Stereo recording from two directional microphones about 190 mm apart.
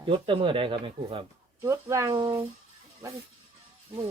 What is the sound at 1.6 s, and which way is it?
Speech, 15° right (ahead or behind).